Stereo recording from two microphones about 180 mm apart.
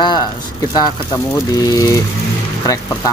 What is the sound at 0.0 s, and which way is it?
Speech, 25° left (ahead or behind).